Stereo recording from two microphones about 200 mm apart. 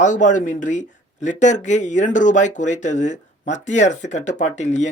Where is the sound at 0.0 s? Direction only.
40° left (ahead or behind).